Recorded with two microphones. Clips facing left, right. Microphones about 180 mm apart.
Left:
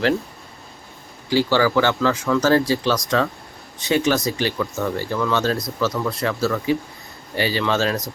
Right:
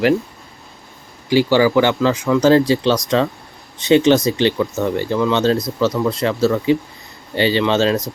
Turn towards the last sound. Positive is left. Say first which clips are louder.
# right 5 dB
turn(degrees=-25)  # may be behind; listen again after turning